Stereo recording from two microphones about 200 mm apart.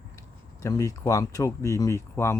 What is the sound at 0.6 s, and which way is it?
Speech, 15° left (ahead or behind).